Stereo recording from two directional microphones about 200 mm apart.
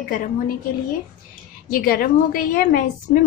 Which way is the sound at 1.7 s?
50° left (ahead or behind).